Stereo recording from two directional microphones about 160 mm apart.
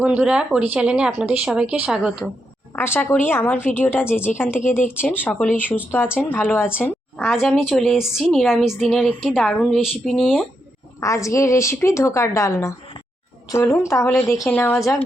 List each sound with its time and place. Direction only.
0.0 s a woman's voice: 5° right (ahead or behind)
2.7 s speech: 15° left (ahead or behind)
7.2 s a woman's voice: centre (ahead or behind)
11.0 s a woman's voice: 20° left (ahead or behind)